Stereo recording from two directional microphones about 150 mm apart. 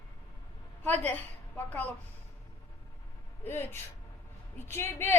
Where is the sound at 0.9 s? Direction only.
10° left (ahead or behind).